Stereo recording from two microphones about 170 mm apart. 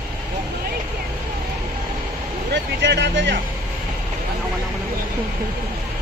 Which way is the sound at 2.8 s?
90° right.